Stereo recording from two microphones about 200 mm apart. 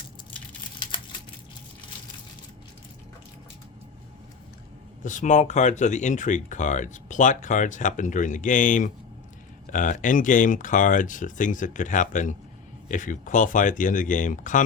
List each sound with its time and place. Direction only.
5.0 s speech: 40° left (ahead or behind)